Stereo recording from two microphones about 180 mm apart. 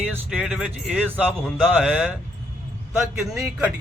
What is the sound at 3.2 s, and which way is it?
Speech, centre (ahead or behind).